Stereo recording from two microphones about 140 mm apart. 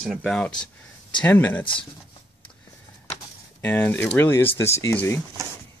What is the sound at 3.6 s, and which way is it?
Speech, 10° left (ahead or behind).